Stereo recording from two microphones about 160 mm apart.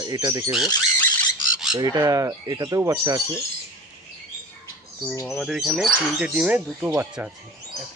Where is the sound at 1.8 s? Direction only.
20° right (ahead or behind).